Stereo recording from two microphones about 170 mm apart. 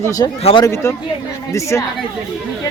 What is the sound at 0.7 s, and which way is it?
Speech, 15° left (ahead or behind).